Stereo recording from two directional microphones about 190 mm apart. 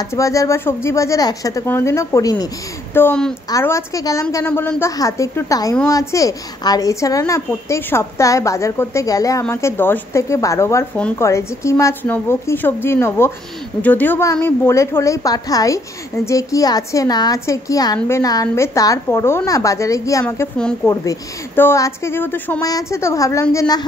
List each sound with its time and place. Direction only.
0.1 s a woman's voice: 15° left (ahead or behind)